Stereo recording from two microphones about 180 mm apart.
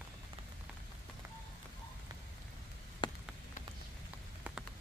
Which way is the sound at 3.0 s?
25° left (ahead or behind).